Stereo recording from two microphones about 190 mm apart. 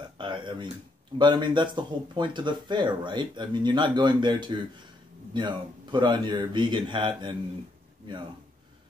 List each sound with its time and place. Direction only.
0.2 s speech: 25° right (ahead or behind)